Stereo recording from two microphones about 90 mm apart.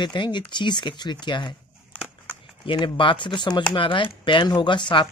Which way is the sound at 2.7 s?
70° left (ahead or behind).